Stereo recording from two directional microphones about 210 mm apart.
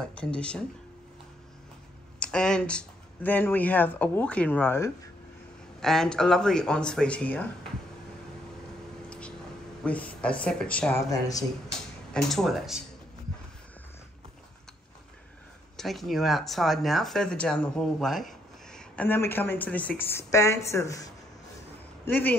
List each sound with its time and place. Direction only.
0.0 s speech: 5° left (ahead or behind)
2.1 s speech: 5° left (ahead or behind)
9.8 s speech: 5° left (ahead or behind)
11.1 s speech: 15° left (ahead or behind)
12.1 s speech: centre (ahead or behind)
15.8 s speech: centre (ahead or behind)